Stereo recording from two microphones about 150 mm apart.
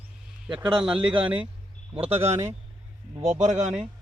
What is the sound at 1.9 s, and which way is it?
Speech, 40° right (ahead or behind).